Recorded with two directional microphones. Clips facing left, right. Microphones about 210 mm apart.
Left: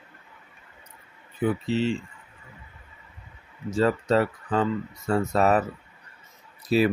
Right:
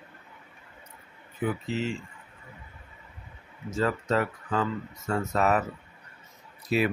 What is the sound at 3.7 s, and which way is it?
Speech, 30° left (ahead or behind).